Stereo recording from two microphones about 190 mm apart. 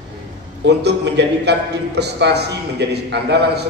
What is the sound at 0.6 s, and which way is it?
A man's voice, 65° right (ahead or behind).